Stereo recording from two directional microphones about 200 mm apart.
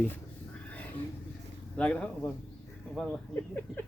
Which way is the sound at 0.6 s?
5° left (ahead or behind).